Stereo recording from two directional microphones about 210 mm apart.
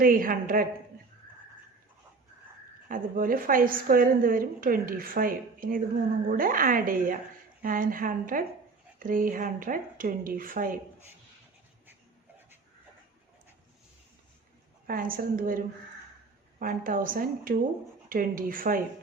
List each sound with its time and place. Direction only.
0.0 s speech: 40° right (ahead or behind)
2.9 s a woman's voice: 40° right (ahead or behind)
14.8 s a woman's voice: 40° right (ahead or behind)